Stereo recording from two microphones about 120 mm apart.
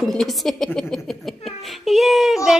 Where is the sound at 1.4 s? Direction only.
Centre (ahead or behind).